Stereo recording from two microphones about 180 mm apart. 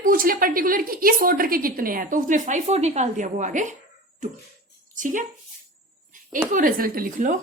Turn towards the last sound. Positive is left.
turn(degrees=-50)  # may be behind; listen again after turning